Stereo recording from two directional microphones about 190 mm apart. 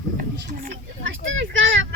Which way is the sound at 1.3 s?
90° right.